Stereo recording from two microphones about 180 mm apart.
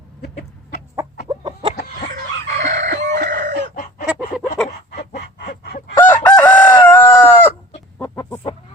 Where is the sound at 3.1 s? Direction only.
70° right (ahead or behind).